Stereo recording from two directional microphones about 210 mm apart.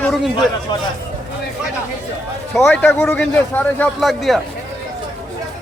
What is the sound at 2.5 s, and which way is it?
A man's voice, 5° left (ahead or behind).